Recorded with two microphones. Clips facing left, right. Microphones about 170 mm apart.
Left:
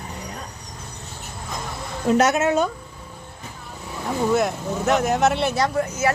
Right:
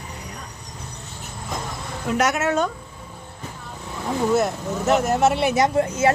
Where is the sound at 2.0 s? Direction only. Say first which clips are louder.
Left 3 dB; 30° left (ahead or behind).